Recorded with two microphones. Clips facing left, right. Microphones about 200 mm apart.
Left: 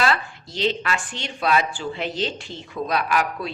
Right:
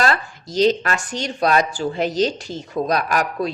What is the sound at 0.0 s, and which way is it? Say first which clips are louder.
A woman's voice: right 2 dB; 40° right (ahead or behind).